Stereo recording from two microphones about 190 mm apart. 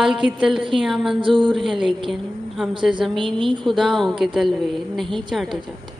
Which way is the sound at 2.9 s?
25° right (ahead or behind).